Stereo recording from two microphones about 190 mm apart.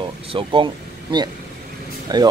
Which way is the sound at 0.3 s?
25° right (ahead or behind).